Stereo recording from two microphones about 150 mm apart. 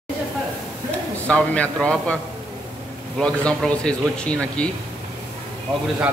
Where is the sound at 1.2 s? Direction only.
10° left (ahead or behind).